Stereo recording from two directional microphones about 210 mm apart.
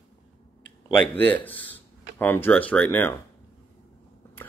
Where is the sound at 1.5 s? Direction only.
60° right (ahead or behind).